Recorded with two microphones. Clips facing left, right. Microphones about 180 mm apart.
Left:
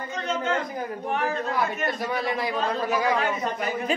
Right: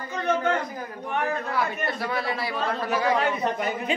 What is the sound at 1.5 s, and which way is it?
A man's voice, 15° left (ahead or behind).